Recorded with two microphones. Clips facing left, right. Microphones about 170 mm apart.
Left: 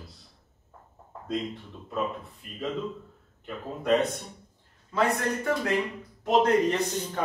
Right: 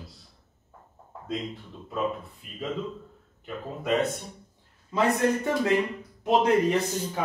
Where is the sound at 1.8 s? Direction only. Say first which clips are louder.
Right 1 dB; centre (ahead or behind).